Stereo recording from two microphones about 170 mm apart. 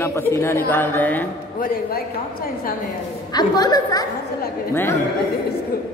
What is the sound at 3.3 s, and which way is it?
A woman's voice, 25° left (ahead or behind).